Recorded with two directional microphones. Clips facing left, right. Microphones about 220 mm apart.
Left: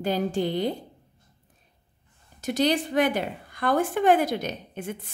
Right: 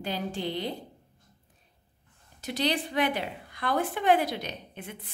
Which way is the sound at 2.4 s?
45° left (ahead or behind).